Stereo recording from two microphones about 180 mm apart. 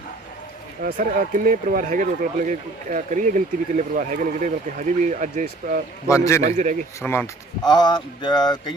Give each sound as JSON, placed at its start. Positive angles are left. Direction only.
{"t": 0.8, "sound": "speech", "side_deg": -50}
{"t": 6.1, "sound": "a man's voice", "side_deg": 15}
{"t": 6.4, "sound": "a man's voice", "side_deg": -40}
{"t": 7.0, "sound": "a man's voice", "side_deg": 10}
{"t": 7.6, "sound": "speech", "side_deg": 25}